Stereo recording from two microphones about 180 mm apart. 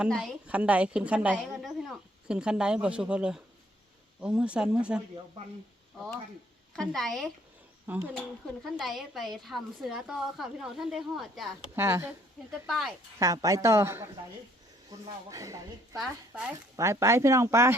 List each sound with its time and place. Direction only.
0.0 s a woman's voice: centre (ahead or behind)
6.7 s a woman's voice: centre (ahead or behind)
7.9 s a woman's voice: 10° right (ahead or behind)
11.8 s speech: 15° right (ahead or behind)
12.5 s a woman's voice: centre (ahead or behind)
13.1 s speech: 20° right (ahead or behind)
16.0 s speech: 5° right (ahead or behind)